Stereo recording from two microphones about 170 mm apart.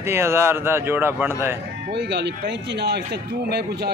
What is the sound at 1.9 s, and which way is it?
A man's voice, 90° right.